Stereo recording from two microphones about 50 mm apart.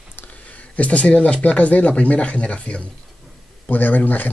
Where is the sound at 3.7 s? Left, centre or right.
Left.